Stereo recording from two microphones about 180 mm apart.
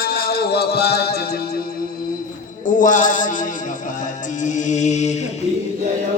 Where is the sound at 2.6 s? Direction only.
45° left (ahead or behind).